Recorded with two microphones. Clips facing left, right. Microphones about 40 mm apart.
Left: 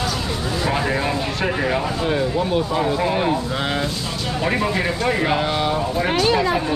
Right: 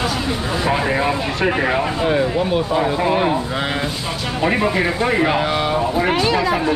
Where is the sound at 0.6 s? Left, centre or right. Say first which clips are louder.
Right 3 dB; centre.